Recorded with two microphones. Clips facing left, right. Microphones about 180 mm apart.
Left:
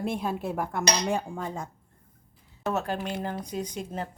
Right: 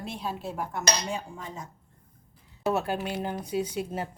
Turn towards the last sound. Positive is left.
turn(degrees=-5)  # may be behind; listen again after turning